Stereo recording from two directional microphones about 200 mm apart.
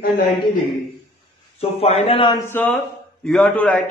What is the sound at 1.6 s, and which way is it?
A man's voice, 35° left (ahead or behind).